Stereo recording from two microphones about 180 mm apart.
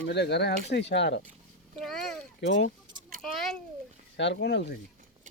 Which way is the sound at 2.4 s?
80° left.